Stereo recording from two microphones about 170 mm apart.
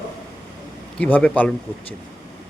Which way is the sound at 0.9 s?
10° left (ahead or behind).